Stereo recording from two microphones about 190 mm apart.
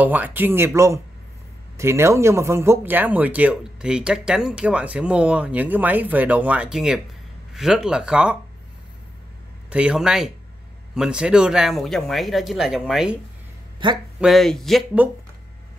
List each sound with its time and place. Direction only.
0.0 s speech: 10° right (ahead or behind)
9.7 s speech: 5° right (ahead or behind)
13.8 s a man's voice: 25° right (ahead or behind)
14.2 s speech: centre (ahead or behind)